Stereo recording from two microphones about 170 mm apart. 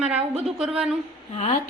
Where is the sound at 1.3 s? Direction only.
40° left (ahead or behind).